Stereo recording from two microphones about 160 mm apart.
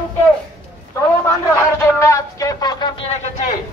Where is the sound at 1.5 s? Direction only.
15° left (ahead or behind).